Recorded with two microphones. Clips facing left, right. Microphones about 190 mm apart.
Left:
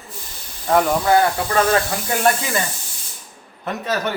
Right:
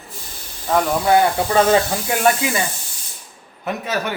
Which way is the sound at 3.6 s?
10° right (ahead or behind).